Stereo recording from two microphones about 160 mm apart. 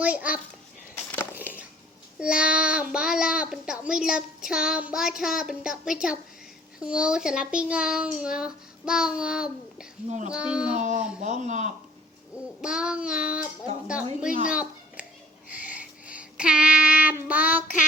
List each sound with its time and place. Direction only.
0.0 s a child's voice: 10° right (ahead or behind)
1.1 s a sound: 15° left (ahead or behind)
1.4 s a sound: 10° right (ahead or behind)
2.1 s a child's voice: 5° right (ahead or behind)
10.1 s speech: 45° right (ahead or behind)
10.3 s a child's voice: 5° right (ahead or behind)
10.8 s speech: 50° right (ahead or behind)
12.6 s a child's voice: 5° right (ahead or behind)
14.4 s a sound: 5° right (ahead or behind)
15.5 s child singing: 10° right (ahead or behind)